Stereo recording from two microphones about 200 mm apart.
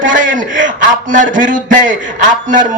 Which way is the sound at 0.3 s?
40° right (ahead or behind).